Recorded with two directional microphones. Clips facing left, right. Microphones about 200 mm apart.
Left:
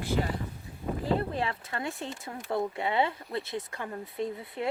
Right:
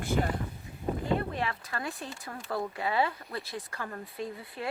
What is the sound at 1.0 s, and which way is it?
Speech, 30° left (ahead or behind).